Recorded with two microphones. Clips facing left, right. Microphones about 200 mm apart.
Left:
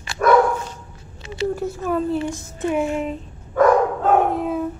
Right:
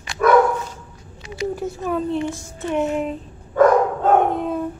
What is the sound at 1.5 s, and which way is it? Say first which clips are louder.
Speech: left 1 dB; centre (ahead or behind).